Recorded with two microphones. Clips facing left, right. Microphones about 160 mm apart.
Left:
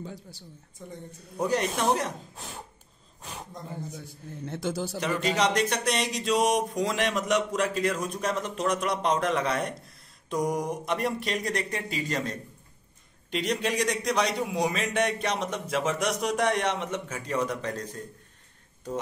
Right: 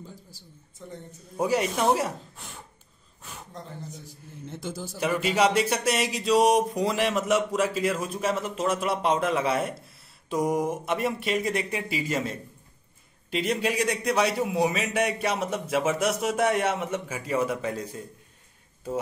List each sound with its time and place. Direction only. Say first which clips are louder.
0.0 s speech: left 5 dB; 70° left (ahead or behind)
0.8 s a man's voice: right 1 dB; 10° left (ahead or behind)
1.3 s a man's voice: right 2 dB; 10° right (ahead or behind)
4.5 s a man's voice: left 5 dB; 75° left (ahead or behind)
5.0 s a man's voice: right 3 dB; 10° right (ahead or behind)